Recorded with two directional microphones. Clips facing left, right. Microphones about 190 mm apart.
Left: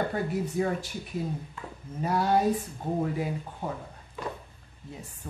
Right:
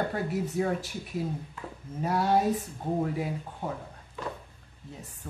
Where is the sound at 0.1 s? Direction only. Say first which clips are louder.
Left 1 dB; centre (ahead or behind).